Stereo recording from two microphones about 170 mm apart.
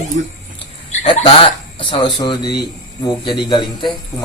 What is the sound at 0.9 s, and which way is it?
Speech, 40° left (ahead or behind).